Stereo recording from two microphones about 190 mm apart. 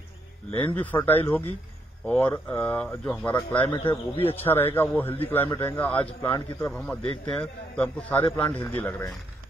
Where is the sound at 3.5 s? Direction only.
25° left (ahead or behind).